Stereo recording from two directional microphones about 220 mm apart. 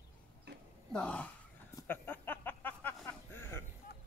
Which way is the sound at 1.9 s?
10° left (ahead or behind).